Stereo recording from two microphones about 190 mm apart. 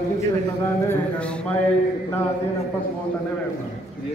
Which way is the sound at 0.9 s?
5° left (ahead or behind).